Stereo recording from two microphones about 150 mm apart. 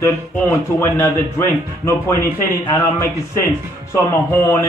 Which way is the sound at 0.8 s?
20° left (ahead or behind).